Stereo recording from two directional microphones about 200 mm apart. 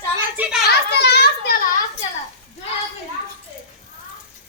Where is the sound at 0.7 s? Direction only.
55° left (ahead or behind).